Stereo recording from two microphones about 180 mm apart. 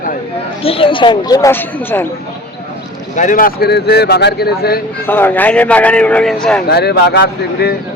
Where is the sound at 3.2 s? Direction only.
50° left (ahead or behind).